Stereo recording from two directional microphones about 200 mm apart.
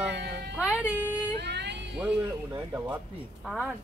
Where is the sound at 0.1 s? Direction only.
55° right (ahead or behind).